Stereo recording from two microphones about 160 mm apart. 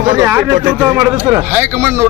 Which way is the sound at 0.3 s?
15° right (ahead or behind).